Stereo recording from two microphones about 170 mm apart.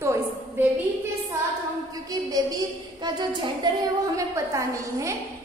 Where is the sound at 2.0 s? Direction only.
20° right (ahead or behind).